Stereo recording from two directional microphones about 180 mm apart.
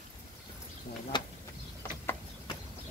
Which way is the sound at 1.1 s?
25° left (ahead or behind).